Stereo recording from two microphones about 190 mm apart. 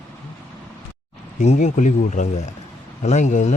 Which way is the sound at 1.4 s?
40° left (ahead or behind).